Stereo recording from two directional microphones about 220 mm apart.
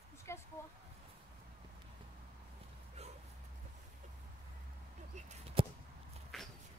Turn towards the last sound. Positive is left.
turn(degrees=0)  # may be behind; listen again after turning